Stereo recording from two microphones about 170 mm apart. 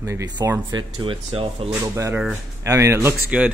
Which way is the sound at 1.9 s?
15° right (ahead or behind).